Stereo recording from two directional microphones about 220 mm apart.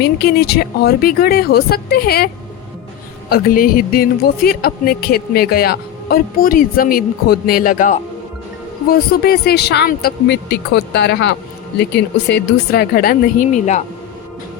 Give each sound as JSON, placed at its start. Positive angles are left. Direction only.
{"t": 0.0, "sound": "speech", "side_deg": 45}